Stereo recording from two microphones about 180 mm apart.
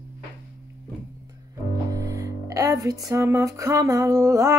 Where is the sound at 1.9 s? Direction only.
15° right (ahead or behind).